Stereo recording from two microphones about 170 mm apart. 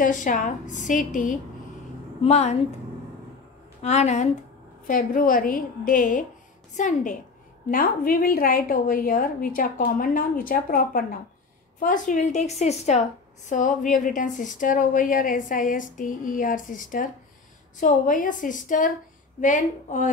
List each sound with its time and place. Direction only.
0.0 s a woman's voice: 50° left (ahead or behind)
2.2 s speech: 40° left (ahead or behind)
3.8 s speech: 40° left (ahead or behind)
4.8 s a woman's voice: 55° left (ahead or behind)